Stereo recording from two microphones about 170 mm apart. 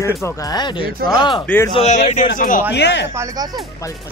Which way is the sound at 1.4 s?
10° left (ahead or behind).